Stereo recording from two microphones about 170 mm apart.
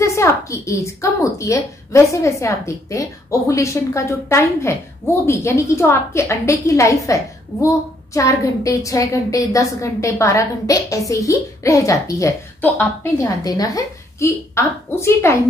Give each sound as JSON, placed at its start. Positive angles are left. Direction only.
{"t": 0.0, "sound": "a woman's voice", "side_deg": 15}